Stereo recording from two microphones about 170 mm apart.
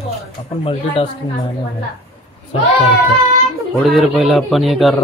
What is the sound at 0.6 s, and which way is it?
Speech, 35° left (ahead or behind).